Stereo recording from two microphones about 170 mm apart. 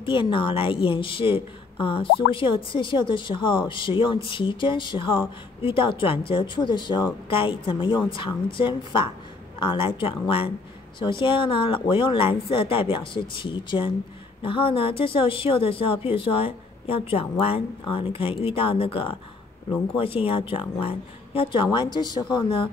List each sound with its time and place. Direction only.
0.0 s a woman's voice: 30° left (ahead or behind)